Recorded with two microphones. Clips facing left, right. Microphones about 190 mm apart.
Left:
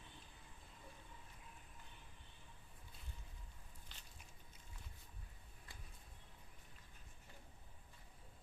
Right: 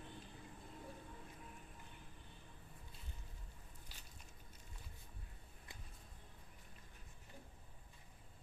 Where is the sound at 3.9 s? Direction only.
10° right (ahead or behind).